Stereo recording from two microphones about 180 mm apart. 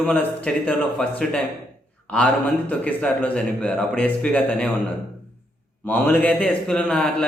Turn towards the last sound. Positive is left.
turn(degrees=5)  # may be behind; listen again after turning